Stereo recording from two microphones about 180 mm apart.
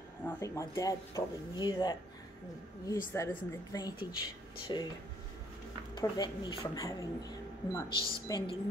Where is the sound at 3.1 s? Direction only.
20° left (ahead or behind).